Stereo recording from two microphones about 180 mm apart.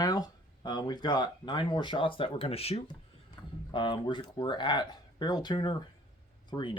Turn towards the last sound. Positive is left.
turn(degrees=25)  # may be behind; listen again after turning